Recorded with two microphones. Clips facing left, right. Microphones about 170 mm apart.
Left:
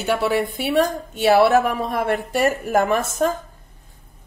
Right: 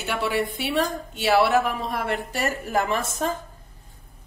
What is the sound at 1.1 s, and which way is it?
A woman's voice, 50° left (ahead or behind).